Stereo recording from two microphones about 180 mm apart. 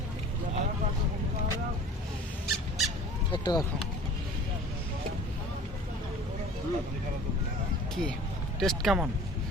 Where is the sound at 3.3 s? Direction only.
25° left (ahead or behind).